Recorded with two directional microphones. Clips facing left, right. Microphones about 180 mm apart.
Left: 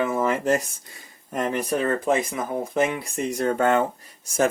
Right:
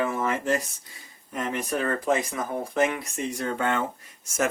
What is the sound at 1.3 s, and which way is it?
Speech, 35° left (ahead or behind).